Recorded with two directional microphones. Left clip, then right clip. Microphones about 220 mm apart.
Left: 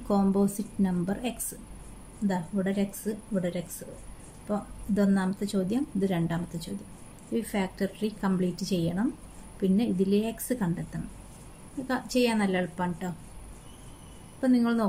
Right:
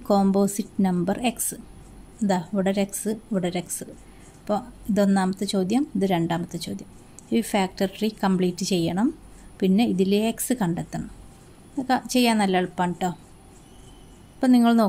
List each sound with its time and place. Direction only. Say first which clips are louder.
0.1 s a woman's voice: right 6 dB; 40° right (ahead or behind)
14.4 s a woman's voice: right 7 dB; 40° right (ahead or behind)